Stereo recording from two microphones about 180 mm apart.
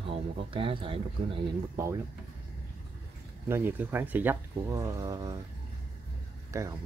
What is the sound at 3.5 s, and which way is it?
Speech, 10° right (ahead or behind).